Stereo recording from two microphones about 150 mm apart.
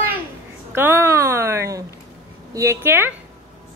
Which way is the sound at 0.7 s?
15° right (ahead or behind).